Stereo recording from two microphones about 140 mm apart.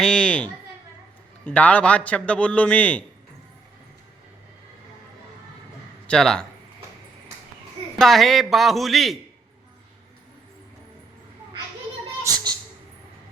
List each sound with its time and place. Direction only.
0.0 s a man's voice: 5° left (ahead or behind)
6.1 s a man's voice: 5° left (ahead or behind)
7.9 s a man's voice: centre (ahead or behind)
12.2 s speech: 25° right (ahead or behind)